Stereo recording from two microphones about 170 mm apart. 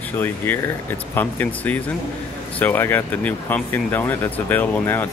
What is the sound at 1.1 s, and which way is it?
Speech, 10° left (ahead or behind).